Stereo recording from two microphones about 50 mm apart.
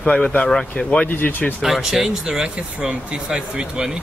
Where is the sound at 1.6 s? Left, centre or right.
Centre.